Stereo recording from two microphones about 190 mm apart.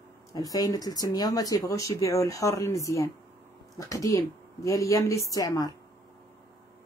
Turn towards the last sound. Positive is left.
turn(degrees=20)  # may be behind; listen again after turning